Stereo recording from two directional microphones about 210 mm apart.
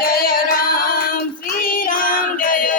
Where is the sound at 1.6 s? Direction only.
40° left (ahead or behind).